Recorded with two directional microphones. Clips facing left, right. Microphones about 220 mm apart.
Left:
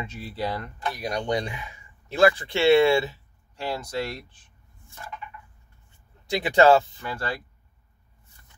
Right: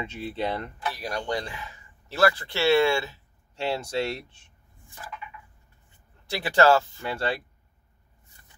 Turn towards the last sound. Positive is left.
turn(degrees=-30)  # may be behind; listen again after turning